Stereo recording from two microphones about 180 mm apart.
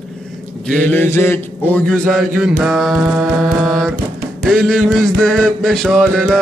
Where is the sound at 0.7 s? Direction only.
10° left (ahead or behind).